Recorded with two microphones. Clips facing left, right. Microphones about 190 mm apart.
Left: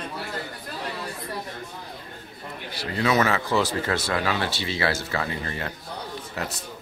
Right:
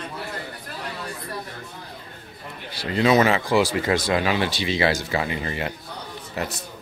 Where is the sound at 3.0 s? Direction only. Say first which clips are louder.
Right 4 dB; 20° right (ahead or behind).